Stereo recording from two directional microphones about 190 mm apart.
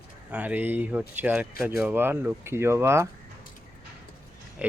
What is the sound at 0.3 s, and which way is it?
Speech, 10° right (ahead or behind).